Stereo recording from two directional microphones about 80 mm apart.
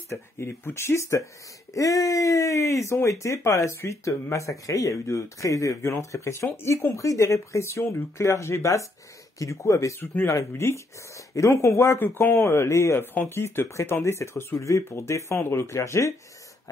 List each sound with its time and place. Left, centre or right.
0.1 s speech: left
1.7 s speech: left
9.9 s speech: left